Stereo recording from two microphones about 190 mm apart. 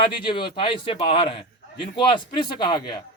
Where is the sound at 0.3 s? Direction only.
25° left (ahead or behind).